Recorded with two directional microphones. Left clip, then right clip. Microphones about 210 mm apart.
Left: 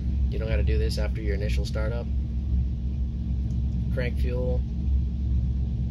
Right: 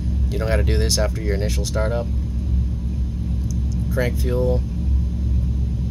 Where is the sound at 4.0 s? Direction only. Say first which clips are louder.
Right 9 dB; 30° right (ahead or behind).